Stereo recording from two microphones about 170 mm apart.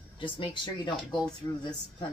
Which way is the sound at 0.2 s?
30° left (ahead or behind).